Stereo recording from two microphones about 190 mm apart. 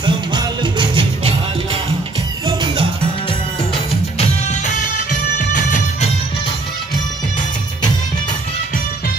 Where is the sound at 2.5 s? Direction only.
25° right (ahead or behind).